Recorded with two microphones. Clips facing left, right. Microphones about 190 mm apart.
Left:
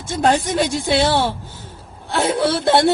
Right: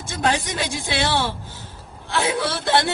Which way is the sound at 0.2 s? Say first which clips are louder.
Left 6 dB; 55° left (ahead or behind).